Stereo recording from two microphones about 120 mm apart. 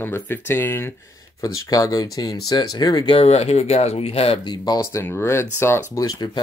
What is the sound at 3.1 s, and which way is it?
Speech, 60° left (ahead or behind).